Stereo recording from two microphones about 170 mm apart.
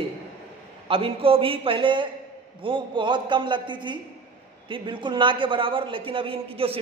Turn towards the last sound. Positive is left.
turn(degrees=-35)  # may be behind; listen again after turning